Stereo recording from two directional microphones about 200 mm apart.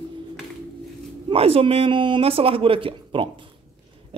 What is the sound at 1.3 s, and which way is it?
Speech, 30° right (ahead or behind).